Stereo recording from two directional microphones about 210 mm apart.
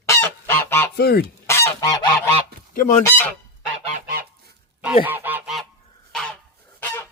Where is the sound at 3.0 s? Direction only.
10° left (ahead or behind).